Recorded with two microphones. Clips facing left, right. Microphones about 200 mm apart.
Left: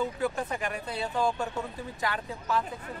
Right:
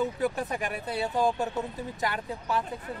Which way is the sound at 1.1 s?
20° right (ahead or behind).